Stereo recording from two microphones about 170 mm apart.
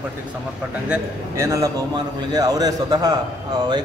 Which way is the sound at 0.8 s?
10° right (ahead or behind).